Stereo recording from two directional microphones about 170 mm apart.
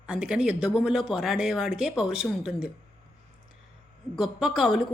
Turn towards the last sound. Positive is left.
turn(degrees=0)  # may be behind; listen again after turning